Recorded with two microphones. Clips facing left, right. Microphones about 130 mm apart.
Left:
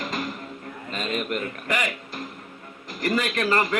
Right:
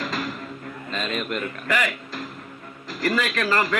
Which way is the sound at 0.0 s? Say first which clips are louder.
Right 1 dB; 20° left (ahead or behind).